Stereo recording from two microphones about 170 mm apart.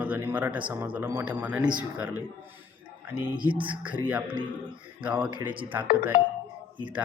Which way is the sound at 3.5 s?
30° right (ahead or behind).